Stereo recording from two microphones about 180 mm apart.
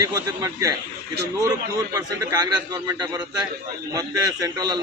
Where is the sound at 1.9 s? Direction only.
20° right (ahead or behind).